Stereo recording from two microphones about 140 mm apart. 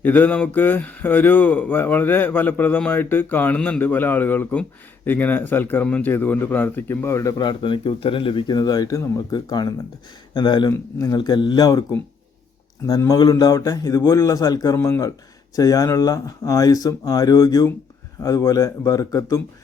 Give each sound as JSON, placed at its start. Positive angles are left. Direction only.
{"t": 0.0, "sound": "speech", "side_deg": 15}